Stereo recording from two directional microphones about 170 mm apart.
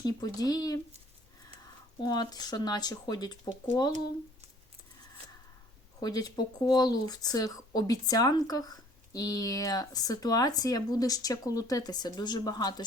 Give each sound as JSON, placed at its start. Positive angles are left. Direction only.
{"t": 0.0, "sound": "speech", "side_deg": 20}
{"t": 2.0, "sound": "speech", "side_deg": 25}
{"t": 6.0, "sound": "speech", "side_deg": 25}